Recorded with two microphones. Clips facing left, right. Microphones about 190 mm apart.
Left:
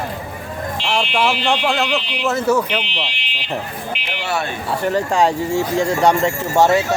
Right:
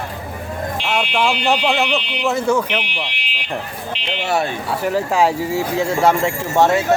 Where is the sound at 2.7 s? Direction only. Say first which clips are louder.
Even; 15° right (ahead or behind).